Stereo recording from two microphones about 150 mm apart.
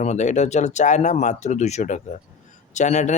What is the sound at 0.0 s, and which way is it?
Speech, 50° left (ahead or behind).